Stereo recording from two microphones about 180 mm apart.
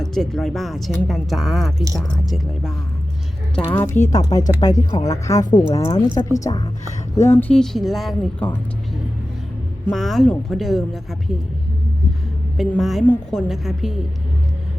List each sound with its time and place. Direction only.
0.0 s speech: centre (ahead or behind)
3.5 s a woman's voice: 10° left (ahead or behind)
9.8 s speech: centre (ahead or behind)
12.5 s speech: centre (ahead or behind)